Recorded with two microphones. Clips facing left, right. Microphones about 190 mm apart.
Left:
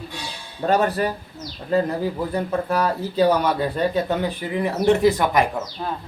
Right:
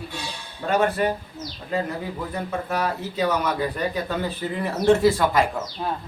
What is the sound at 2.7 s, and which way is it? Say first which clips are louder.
Speech: left 4 dB; 35° left (ahead or behind).